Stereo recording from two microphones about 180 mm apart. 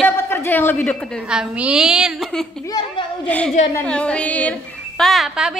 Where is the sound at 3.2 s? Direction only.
5° left (ahead or behind).